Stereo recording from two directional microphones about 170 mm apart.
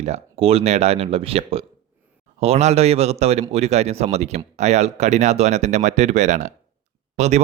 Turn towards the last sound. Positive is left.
turn(degrees=-40)  # may be behind; listen again after turning